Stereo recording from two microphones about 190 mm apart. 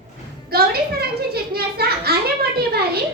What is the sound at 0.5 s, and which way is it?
A child's voice, 55° right (ahead or behind).